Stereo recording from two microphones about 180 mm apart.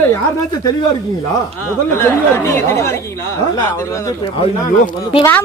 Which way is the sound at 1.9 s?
15° left (ahead or behind).